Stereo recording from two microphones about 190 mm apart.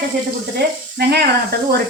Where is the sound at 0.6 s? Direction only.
55° right (ahead or behind).